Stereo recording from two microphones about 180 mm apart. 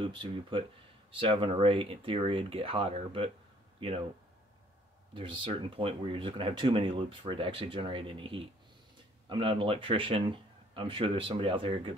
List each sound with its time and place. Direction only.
0.0 s speech: 30° right (ahead or behind)
5.1 s speech: 30° right (ahead or behind)